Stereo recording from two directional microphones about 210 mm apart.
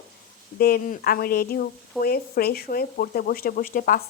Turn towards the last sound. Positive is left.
turn(degrees=40)  # may be behind; listen again after turning